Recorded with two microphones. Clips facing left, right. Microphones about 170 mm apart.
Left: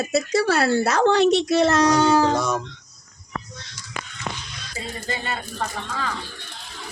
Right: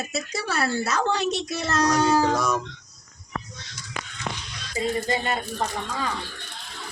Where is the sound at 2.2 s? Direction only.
25° left (ahead or behind).